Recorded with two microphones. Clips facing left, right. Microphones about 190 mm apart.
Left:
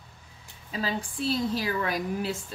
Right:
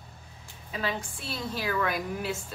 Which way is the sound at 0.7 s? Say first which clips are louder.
Left 2 dB; 30° left (ahead or behind).